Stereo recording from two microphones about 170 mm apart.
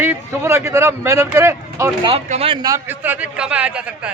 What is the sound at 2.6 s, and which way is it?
A man's voice, 15° right (ahead or behind).